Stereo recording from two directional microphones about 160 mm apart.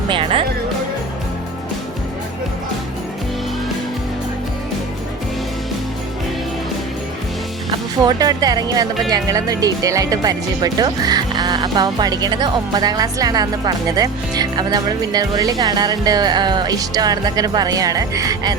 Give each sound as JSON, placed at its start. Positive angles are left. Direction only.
{"t": 0.1, "sound": "speech", "side_deg": -35}
{"t": 7.7, "sound": "speech", "side_deg": -25}